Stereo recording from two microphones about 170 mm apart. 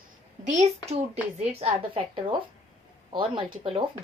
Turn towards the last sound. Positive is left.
turn(degrees=-30)  # may be behind; listen again after turning